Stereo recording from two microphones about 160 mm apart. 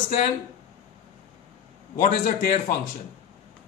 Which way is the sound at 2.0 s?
55° left (ahead or behind).